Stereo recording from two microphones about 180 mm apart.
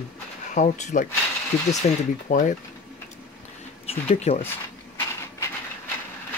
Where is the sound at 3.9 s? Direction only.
35° left (ahead or behind).